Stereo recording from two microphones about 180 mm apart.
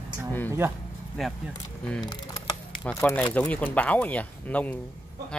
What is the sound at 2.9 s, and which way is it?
Speech, 10° left (ahead or behind).